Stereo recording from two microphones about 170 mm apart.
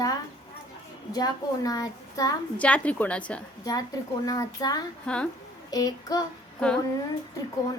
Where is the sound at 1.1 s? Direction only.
20° left (ahead or behind).